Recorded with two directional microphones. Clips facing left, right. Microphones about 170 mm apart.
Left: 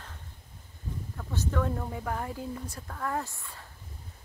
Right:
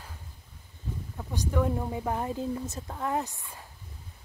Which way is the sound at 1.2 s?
15° right (ahead or behind).